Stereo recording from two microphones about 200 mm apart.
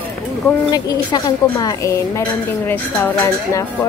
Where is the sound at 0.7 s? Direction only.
20° left (ahead or behind).